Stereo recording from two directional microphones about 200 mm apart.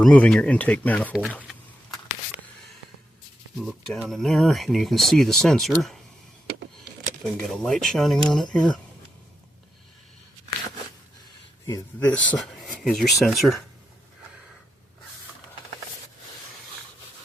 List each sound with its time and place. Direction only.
0.0 s speech: 5° left (ahead or behind)
1.3 s a sound: 5° left (ahead or behind)
3.6 s speech: centre (ahead or behind)
6.5 s a sound: 50° right (ahead or behind)
7.3 s speech: centre (ahead or behind)
11.6 s speech: 10° left (ahead or behind)